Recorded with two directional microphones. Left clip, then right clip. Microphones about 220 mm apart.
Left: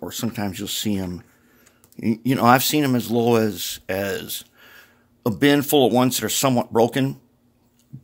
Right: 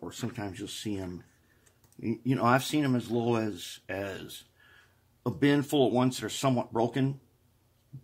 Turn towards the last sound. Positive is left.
turn(degrees=55)  # may be behind; listen again after turning